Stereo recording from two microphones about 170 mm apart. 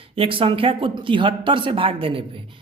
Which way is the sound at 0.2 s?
30° right (ahead or behind).